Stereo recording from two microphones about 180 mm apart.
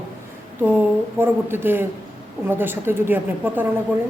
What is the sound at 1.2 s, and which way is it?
A woman's voice, 10° right (ahead or behind).